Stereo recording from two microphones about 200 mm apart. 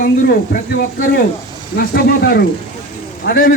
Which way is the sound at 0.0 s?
45° left (ahead or behind).